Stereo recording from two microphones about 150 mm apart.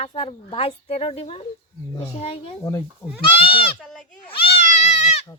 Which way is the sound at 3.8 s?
Centre (ahead or behind).